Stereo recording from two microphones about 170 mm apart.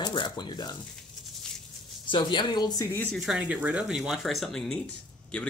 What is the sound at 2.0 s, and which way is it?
Speech, 30° left (ahead or behind).